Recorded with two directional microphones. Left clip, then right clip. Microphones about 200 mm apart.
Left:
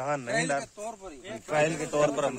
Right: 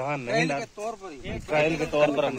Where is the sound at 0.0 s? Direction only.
15° left (ahead or behind).